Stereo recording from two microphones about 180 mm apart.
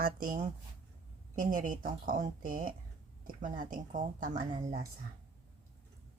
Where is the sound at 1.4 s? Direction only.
50° right (ahead or behind).